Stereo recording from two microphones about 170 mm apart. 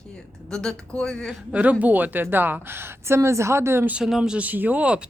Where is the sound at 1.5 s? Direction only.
10° right (ahead or behind).